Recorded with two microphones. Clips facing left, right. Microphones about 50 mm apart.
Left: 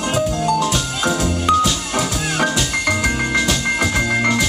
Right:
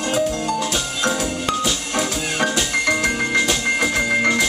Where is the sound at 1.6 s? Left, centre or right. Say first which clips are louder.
Left 3 dB; centre.